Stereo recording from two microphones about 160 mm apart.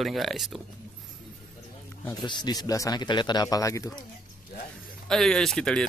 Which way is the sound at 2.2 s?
30° left (ahead or behind).